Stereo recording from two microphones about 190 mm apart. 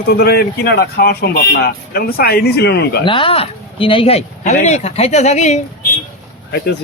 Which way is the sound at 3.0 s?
25° left (ahead or behind).